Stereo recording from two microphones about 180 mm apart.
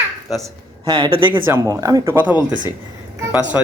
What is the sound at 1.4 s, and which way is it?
Speech, 15° right (ahead or behind).